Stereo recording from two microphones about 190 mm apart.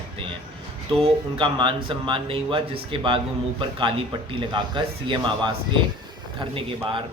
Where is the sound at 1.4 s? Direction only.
25° right (ahead or behind).